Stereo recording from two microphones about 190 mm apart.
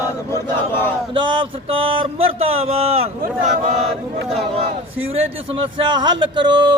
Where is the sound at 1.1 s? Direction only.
25° right (ahead or behind).